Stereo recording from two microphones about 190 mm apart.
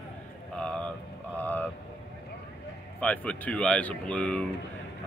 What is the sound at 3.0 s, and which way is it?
Speech, 5° left (ahead or behind).